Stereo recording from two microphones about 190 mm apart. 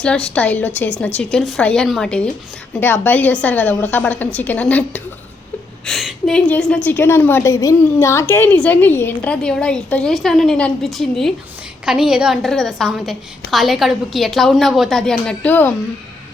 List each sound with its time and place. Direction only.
0.0 s a woman's voice: 5° left (ahead or behind)